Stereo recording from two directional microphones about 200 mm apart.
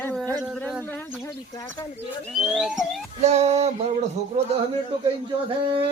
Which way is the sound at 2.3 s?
Centre (ahead or behind).